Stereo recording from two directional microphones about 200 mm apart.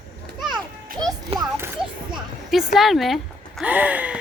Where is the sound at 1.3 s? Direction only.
30° right (ahead or behind).